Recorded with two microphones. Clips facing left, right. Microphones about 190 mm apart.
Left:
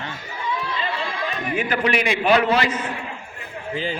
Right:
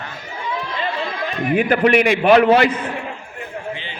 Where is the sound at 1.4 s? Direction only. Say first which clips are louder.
Right 8 dB; 55° right (ahead or behind).